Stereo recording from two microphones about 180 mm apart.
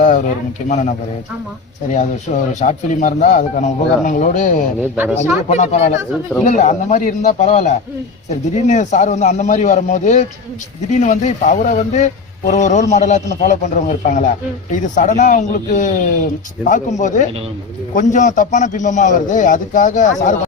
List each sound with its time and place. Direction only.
0.7 s speech: 40° left (ahead or behind)
4.9 s speech: 10° right (ahead or behind)
5.5 s speech: 35° left (ahead or behind)